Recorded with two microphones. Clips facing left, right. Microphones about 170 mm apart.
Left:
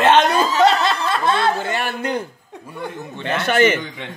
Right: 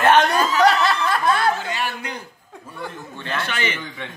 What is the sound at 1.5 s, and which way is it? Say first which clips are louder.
Speech: left 4 dB; 55° left (ahead or behind).